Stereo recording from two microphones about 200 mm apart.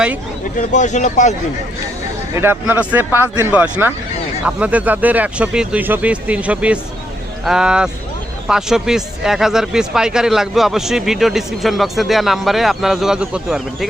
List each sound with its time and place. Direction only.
0.5 s speech: 35° left (ahead or behind)
2.3 s speech: 10° right (ahead or behind)